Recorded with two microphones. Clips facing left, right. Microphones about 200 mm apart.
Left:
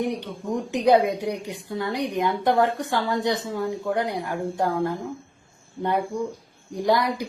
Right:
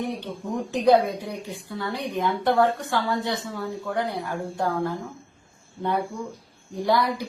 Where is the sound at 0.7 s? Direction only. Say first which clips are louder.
Even; 15° left (ahead or behind).